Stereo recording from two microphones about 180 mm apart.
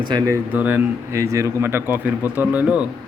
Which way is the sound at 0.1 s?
20° right (ahead or behind).